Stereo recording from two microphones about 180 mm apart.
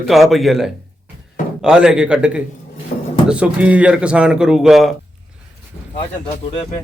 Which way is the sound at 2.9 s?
50° left (ahead or behind).